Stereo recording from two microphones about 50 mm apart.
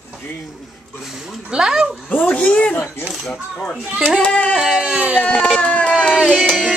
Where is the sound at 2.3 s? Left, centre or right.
Left.